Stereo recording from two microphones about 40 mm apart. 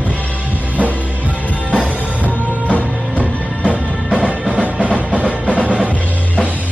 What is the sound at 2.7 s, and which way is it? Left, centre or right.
Music, left.